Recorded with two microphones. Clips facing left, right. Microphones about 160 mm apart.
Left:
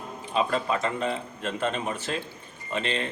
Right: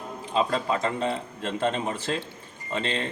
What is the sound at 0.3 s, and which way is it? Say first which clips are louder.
Speech: right 1 dB; 25° right (ahead or behind).